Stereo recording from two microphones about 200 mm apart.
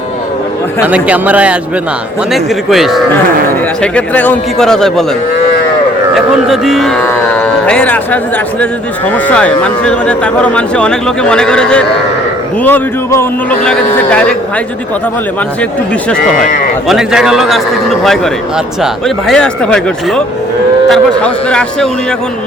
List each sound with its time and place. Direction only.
0.9 s speech: 5° right (ahead or behind)
6.5 s a man's voice: centre (ahead or behind)
16.9 s speech: 5° right (ahead or behind)